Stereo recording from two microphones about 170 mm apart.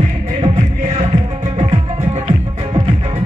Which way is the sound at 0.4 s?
35° right (ahead or behind).